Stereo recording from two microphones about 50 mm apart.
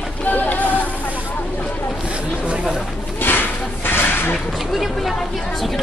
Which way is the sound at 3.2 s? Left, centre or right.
Left.